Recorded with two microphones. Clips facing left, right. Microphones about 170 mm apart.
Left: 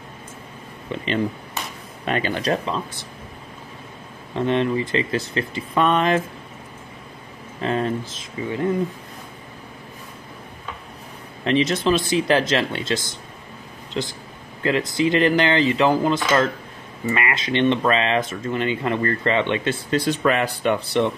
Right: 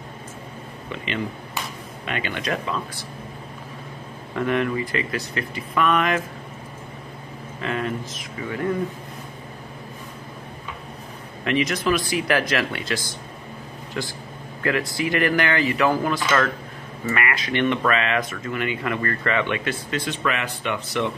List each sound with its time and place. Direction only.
0.9 s speech: 35° left (ahead or behind)
4.4 s speech: 25° left (ahead or behind)
7.6 s speech: 30° left (ahead or behind)
11.4 s speech: 25° left (ahead or behind)